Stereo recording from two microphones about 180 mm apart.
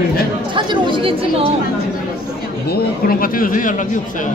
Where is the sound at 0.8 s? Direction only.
30° right (ahead or behind).